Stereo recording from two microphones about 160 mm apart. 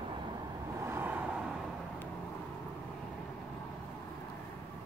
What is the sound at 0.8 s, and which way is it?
Vehicle, 15° right (ahead or behind).